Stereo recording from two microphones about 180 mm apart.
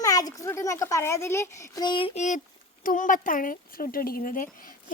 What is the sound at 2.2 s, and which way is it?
Speech, 40° left (ahead or behind).